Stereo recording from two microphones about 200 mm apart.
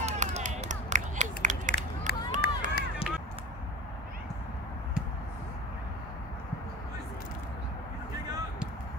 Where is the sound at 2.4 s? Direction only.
50° left (ahead or behind).